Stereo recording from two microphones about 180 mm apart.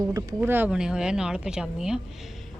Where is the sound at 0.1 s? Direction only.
20° right (ahead or behind).